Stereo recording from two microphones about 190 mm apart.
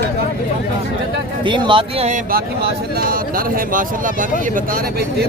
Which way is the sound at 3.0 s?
50° right (ahead or behind).